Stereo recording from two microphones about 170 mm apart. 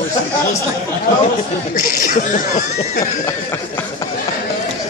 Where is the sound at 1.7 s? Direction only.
55° left (ahead or behind).